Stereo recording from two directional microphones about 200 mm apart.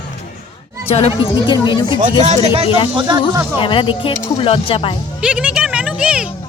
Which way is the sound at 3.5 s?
25° left (ahead or behind).